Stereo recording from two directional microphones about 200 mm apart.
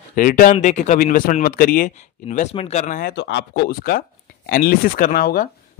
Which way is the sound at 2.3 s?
30° left (ahead or behind).